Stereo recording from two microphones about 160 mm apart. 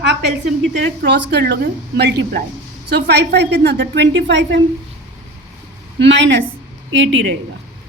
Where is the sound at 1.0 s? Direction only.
90° right.